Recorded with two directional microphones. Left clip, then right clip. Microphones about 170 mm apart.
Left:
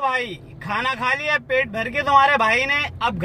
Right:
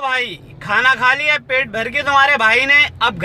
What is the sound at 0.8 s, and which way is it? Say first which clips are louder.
Speech: right 8 dB; 10° right (ahead or behind).